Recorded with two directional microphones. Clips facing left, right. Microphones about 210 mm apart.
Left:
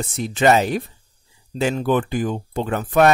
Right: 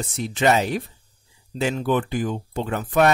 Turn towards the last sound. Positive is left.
turn(degrees=50)  # may be behind; listen again after turning